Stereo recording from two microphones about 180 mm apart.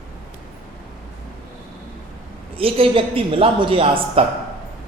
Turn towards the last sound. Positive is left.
turn(degrees=-30)  # may be behind; listen again after turning